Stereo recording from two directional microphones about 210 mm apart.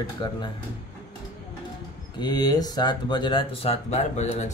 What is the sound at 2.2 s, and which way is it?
Speech, 20° left (ahead or behind).